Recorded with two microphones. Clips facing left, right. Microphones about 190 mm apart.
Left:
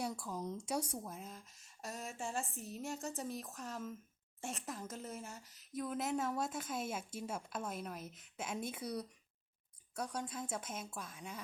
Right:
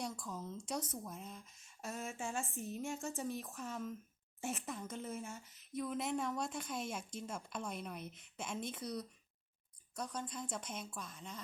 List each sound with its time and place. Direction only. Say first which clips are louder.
0.0 s a woman's voice: left 3 dB; 10° left (ahead or behind)